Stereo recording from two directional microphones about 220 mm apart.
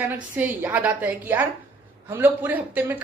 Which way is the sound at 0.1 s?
10° right (ahead or behind).